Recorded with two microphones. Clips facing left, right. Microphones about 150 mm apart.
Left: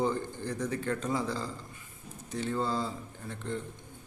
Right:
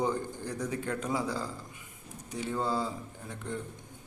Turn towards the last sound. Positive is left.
turn(degrees=-10)  # may be behind; listen again after turning